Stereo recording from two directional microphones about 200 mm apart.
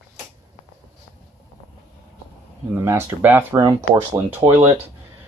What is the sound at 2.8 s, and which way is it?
Speech, 10° right (ahead or behind).